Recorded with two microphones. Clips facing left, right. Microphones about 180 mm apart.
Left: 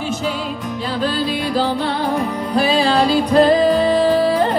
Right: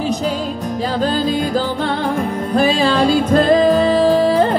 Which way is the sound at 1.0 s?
45° right (ahead or behind).